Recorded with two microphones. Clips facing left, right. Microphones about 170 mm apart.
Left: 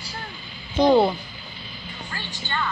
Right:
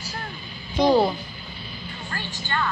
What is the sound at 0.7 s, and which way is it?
Speech, 10° right (ahead or behind).